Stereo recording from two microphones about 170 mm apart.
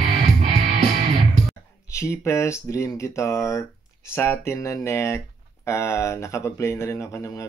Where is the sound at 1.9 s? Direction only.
15° left (ahead or behind).